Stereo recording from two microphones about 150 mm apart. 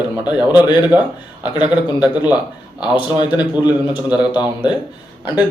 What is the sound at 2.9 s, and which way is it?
Speech, 30° left (ahead or behind).